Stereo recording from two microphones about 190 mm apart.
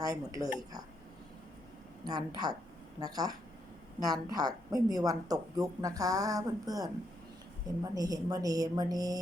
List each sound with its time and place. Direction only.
0.0 s speech: 20° right (ahead or behind)
2.0 s a woman's voice: 20° right (ahead or behind)
7.9 s a woman's voice: 20° right (ahead or behind)